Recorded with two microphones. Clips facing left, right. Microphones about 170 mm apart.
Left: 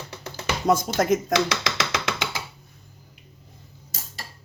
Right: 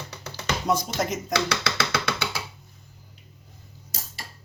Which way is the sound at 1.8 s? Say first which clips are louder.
Even; 15° left (ahead or behind).